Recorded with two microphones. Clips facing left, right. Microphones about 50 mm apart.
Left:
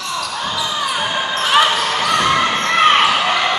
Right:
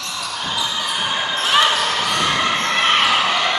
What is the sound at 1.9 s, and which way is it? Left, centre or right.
Basketball bounce, centre.